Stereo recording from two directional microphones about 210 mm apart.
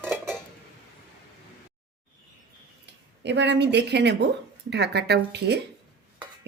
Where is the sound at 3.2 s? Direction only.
55° right (ahead or behind).